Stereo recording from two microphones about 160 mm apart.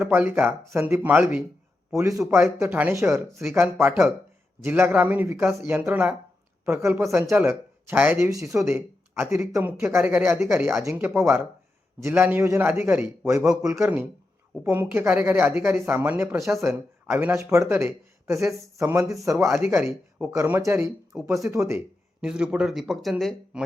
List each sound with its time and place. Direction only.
0.1 s speech: 15° right (ahead or behind)
22.2 s speech: 5° right (ahead or behind)